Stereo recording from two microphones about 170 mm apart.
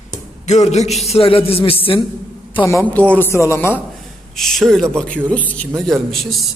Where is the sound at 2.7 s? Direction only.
10° left (ahead or behind).